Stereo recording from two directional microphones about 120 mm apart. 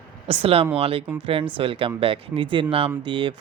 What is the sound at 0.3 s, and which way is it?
Speech, 55° right (ahead or behind).